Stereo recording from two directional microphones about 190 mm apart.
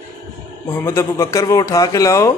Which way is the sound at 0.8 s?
15° left (ahead or behind).